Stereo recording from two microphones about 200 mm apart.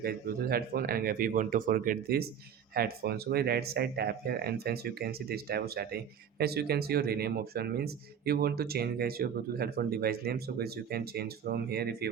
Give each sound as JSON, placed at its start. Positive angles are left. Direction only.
{"t": 0.0, "sound": "speech", "side_deg": -50}